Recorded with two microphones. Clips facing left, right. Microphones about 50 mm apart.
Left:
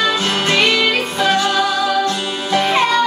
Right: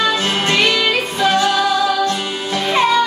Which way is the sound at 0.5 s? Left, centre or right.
Centre.